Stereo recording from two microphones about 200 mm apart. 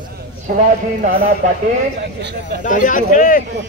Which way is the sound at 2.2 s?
60° right (ahead or behind).